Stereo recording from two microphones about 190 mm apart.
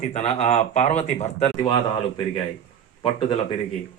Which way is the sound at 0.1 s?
35° left (ahead or behind).